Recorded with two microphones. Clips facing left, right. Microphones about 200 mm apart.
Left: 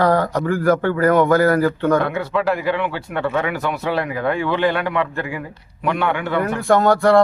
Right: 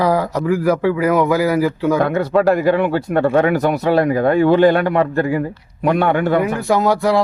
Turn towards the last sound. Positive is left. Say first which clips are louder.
# left 2 dB
turn(degrees=0)  # may be behind; listen again after turning